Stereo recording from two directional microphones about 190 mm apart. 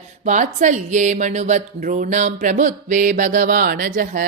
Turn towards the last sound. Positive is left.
turn(degrees=-45)  # may be behind; listen again after turning